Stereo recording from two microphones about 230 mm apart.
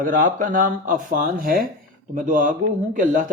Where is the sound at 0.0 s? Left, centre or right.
Right.